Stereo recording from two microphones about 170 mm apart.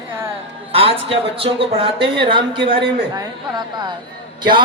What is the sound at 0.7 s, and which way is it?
A woman's voice, 35° right (ahead or behind).